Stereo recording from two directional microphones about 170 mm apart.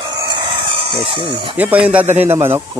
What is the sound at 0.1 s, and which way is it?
Chicken, 25° right (ahead or behind).